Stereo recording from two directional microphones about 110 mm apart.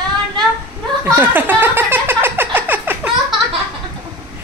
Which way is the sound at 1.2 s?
15° right (ahead or behind).